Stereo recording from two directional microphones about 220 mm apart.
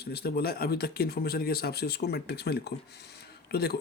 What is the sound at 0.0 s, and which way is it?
Speech, 45° left (ahead or behind).